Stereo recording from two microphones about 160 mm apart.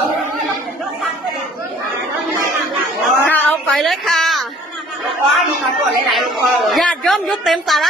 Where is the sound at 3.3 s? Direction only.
10° left (ahead or behind).